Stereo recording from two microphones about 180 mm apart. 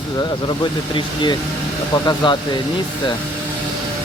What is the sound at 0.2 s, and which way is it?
Speech, 25° left (ahead or behind).